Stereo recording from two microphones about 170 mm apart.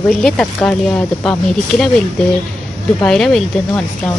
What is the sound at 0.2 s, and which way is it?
Speech, 5° left (ahead or behind).